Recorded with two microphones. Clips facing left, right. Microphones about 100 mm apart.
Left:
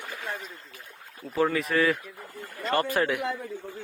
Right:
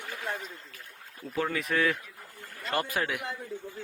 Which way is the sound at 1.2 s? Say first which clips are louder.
Left 5 dB; centre (ahead or behind).